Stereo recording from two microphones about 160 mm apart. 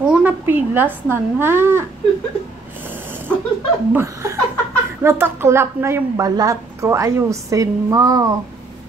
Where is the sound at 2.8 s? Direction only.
15° right (ahead or behind).